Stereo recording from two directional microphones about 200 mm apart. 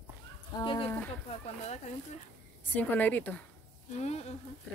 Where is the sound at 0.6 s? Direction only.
25° left (ahead or behind).